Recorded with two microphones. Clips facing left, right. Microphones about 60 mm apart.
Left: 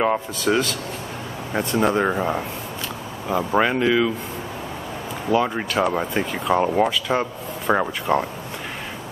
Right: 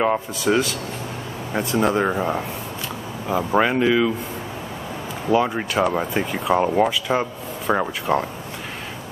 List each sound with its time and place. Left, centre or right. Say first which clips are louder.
0.0 s speech: even; centre
5.3 s speech: right 1 dB; centre